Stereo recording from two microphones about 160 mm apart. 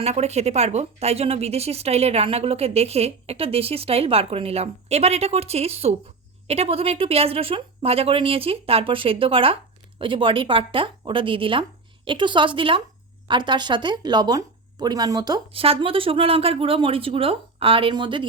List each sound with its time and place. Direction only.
0.0 s speech: 40° right (ahead or behind); by 15.6 s 25° right (ahead or behind)
15.6 s speech: 35° right (ahead or behind)